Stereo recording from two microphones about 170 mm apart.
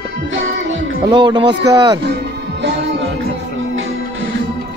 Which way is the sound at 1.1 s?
25° right (ahead or behind).